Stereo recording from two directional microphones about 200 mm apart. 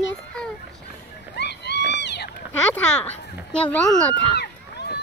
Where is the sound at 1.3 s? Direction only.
55° left (ahead or behind).